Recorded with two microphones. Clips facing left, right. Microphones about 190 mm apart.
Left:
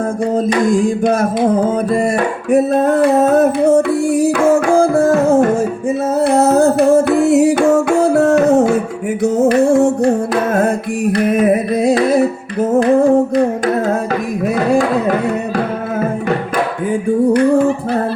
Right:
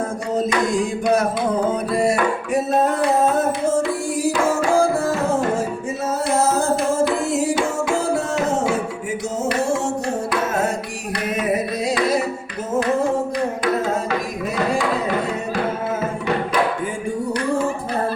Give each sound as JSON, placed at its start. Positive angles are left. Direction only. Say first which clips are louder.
{"t": 0.6, "sound": "music", "louder": "left 7 dB", "side_deg": 50}
{"t": 6.1, "sound": "music", "louder": "left 8 dB", "side_deg": 60}
{"t": 11.3, "sound": "music", "louder": "left 8 dB", "side_deg": 55}
{"t": 14.4, "sound": "music", "louder": "left 8 dB", "side_deg": 55}